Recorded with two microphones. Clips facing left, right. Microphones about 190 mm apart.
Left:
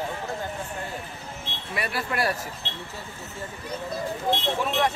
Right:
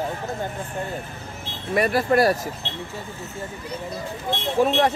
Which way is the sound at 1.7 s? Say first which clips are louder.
Right 10 dB; 45° right (ahead or behind).